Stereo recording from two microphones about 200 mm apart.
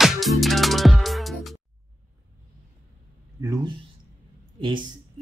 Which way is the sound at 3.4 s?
15° right (ahead or behind).